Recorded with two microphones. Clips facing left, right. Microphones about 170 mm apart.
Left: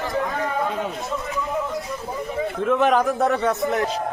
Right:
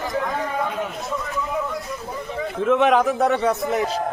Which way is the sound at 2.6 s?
Centre (ahead or behind).